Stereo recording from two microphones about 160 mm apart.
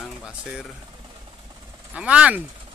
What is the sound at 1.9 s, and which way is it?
Speech, 5° right (ahead or behind).